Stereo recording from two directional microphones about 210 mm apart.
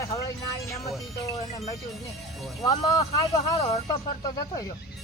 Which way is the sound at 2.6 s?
20° left (ahead or behind).